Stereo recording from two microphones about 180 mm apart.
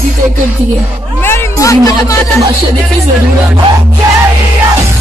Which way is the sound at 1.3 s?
20° left (ahead or behind).